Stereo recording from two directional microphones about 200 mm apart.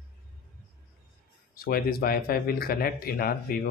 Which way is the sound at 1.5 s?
50° left (ahead or behind).